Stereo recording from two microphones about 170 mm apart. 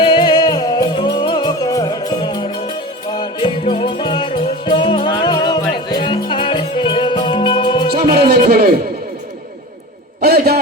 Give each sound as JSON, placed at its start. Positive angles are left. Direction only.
{"t": 0.0, "sound": "music", "side_deg": 30}
{"t": 8.1, "sound": "music", "side_deg": -65}
{"t": 10.2, "sound": "a sound", "side_deg": -65}